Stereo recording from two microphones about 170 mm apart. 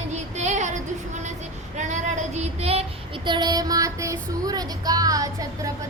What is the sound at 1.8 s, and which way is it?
Child singing, 45° right (ahead or behind).